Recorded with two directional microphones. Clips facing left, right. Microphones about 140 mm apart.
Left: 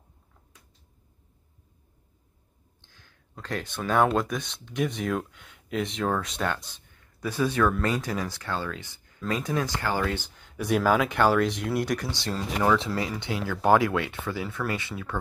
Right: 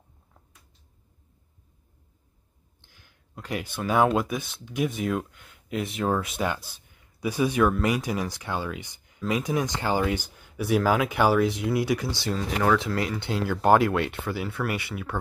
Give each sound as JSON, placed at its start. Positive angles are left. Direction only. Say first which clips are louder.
{"t": 2.8, "sound": "speech", "louder": "even", "side_deg": -10}
{"t": 12.8, "sound": "speech", "louder": "right 2 dB", "side_deg": 20}
{"t": 13.7, "sound": "speech", "louder": "right 1 dB", "side_deg": -20}